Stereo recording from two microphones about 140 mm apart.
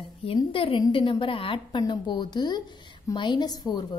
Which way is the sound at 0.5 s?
40° left (ahead or behind).